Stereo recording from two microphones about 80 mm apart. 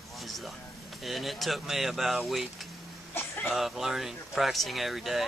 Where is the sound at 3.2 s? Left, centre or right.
Left.